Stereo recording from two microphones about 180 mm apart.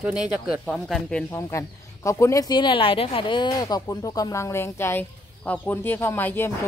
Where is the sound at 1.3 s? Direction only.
15° left (ahead or behind).